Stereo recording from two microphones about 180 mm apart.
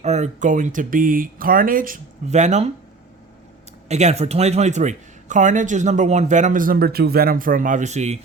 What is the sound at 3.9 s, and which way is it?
Speech, 40° right (ahead or behind).